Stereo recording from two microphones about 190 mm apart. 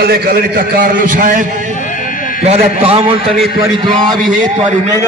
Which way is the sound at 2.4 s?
35° right (ahead or behind).